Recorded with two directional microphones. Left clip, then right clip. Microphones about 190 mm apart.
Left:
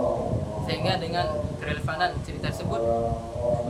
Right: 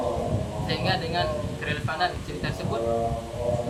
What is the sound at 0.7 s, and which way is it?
Speech, 25° left (ahead or behind).